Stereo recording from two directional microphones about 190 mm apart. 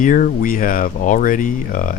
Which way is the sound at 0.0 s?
45° left (ahead or behind).